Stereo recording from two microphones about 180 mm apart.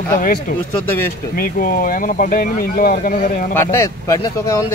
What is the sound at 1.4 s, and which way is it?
Speech, 55° left (ahead or behind).